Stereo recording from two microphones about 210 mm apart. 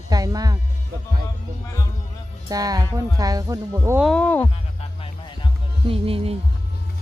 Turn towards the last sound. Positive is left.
turn(degrees=-25)  # may be behind; listen again after turning